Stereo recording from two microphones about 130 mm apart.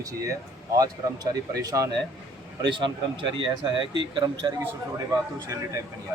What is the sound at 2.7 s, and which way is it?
Speech, 40° right (ahead or behind).